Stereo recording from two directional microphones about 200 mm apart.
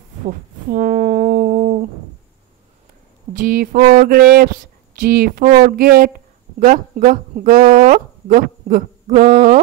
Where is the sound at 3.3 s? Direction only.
45° right (ahead or behind).